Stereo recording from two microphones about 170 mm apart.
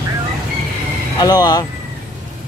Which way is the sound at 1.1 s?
25° left (ahead or behind).